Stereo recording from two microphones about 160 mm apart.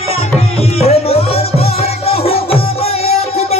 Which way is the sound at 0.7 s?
40° left (ahead or behind).